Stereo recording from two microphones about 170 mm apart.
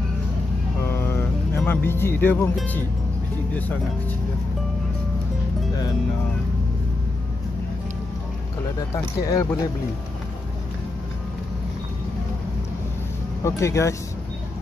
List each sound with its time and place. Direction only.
0.7 s vehicle: 15° left (ahead or behind)
2.5 s speech: 10° left (ahead or behind)
8.9 s speech: 20° left (ahead or behind)
13.4 s speech: 15° left (ahead or behind)